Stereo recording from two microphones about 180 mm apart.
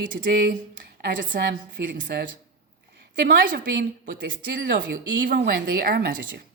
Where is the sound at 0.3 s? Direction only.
60° right (ahead or behind); by 2.2 s 80° right.